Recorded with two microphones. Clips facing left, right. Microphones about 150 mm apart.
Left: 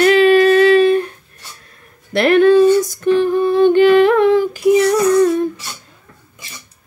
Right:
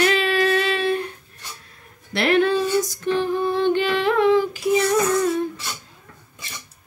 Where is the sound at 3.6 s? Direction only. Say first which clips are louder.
Left 14 dB; 55° left (ahead or behind).